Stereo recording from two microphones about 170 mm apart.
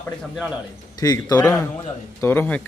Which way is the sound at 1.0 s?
20° left (ahead or behind).